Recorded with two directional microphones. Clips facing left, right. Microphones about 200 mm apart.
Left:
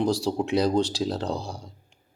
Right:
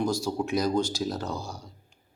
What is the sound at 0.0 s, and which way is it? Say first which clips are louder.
A man's voice: left 3 dB; 30° left (ahead or behind).